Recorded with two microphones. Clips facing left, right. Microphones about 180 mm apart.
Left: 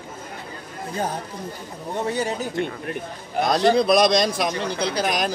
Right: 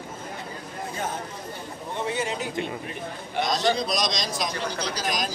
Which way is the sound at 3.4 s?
60° left (ahead or behind).